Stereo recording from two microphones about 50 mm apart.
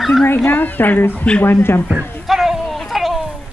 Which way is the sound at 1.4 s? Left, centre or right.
Left.